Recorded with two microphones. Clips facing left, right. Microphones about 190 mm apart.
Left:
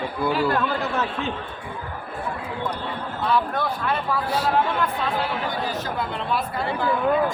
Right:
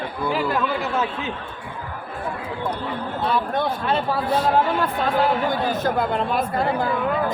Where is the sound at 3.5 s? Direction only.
25° right (ahead or behind).